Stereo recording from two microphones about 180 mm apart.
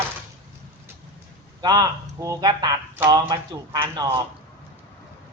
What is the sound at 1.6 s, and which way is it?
Speech, 20° right (ahead or behind).